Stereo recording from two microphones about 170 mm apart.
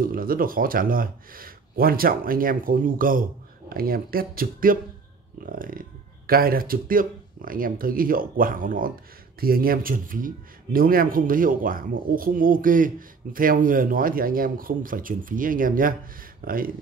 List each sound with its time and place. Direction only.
0.0 s speech: 55° right (ahead or behind)